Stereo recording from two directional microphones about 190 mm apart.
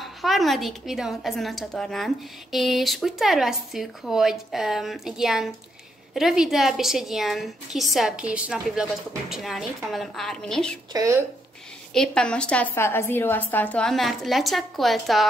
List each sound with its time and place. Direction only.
0.0 s a woman's voice: centre (ahead or behind)
10.9 s speech: 15° right (ahead or behind)
11.9 s a woman's voice: 5° left (ahead or behind)